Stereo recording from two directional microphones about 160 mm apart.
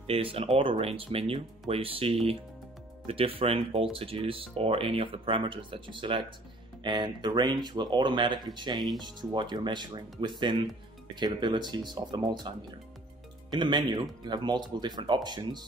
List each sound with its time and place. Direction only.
0.0 s speech: 35° right (ahead or behind)